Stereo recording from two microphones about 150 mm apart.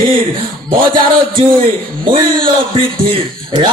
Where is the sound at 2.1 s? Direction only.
35° right (ahead or behind).